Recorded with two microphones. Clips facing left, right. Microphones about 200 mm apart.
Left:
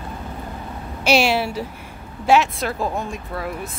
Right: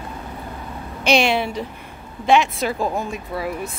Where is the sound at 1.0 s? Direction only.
5° left (ahead or behind).